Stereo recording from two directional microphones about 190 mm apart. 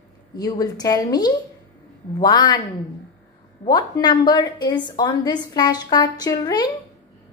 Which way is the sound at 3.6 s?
20° left (ahead or behind).